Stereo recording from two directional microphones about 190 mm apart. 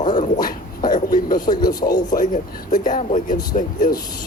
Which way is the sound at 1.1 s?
50° left (ahead or behind).